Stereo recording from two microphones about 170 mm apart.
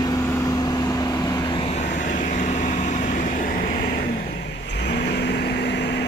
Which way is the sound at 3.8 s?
65° left (ahead or behind).